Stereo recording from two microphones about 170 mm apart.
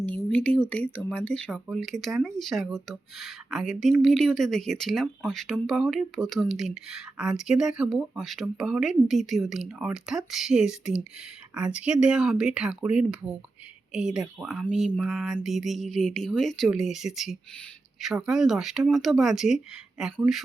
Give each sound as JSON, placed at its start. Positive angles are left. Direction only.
{"t": 0.0, "sound": "speech", "side_deg": 10}